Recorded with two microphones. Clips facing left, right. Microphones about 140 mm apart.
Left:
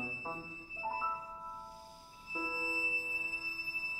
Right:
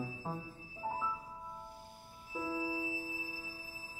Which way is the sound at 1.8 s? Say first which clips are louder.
Right 1 dB; 55° right (ahead or behind).